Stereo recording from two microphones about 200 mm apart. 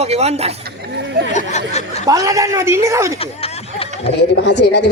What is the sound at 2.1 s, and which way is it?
A man's voice, 15° right (ahead or behind).